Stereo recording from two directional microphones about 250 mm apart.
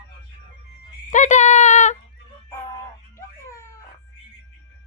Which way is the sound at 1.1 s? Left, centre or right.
Left.